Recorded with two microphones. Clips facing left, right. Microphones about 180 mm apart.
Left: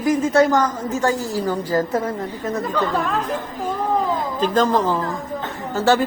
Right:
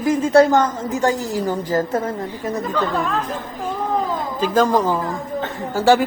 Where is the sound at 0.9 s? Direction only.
15° right (ahead or behind).